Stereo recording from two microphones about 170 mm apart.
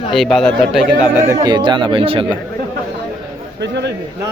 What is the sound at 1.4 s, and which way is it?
Speech, 25° right (ahead or behind).